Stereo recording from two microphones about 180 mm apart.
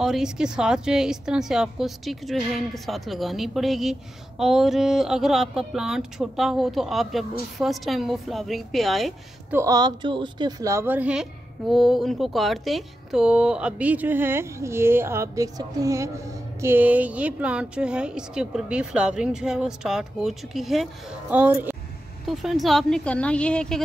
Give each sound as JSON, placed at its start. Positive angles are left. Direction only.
{"t": 0.0, "sound": "speech", "side_deg": -5}
{"t": 9.5, "sound": "a woman's voice", "side_deg": -15}
{"t": 22.2, "sound": "speech", "side_deg": 0}